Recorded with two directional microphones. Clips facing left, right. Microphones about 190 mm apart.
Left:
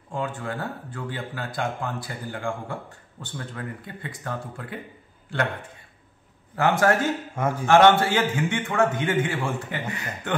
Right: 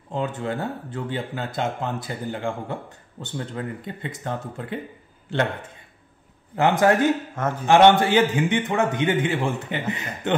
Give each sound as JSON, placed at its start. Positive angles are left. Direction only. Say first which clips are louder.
{"t": 0.1, "sound": "speech", "louder": "right 3 dB", "side_deg": -20}
{"t": 6.5, "sound": "speech", "louder": "right 2 dB", "side_deg": -20}
{"t": 7.3, "sound": "a man's voice", "louder": "even", "side_deg": 10}
{"t": 7.6, "sound": "speech", "louder": "right 2 dB", "side_deg": -20}